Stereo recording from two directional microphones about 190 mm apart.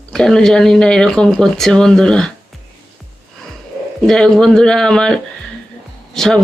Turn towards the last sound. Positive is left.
turn(degrees=0)  # may be behind; listen again after turning